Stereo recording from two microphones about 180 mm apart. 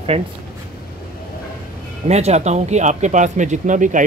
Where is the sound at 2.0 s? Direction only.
40° right (ahead or behind).